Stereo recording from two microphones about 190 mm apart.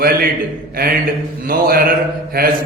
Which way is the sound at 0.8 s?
55° right (ahead or behind).